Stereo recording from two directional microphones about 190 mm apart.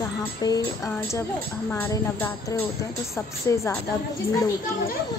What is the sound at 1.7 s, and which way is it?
A woman's voice, 15° left (ahead or behind).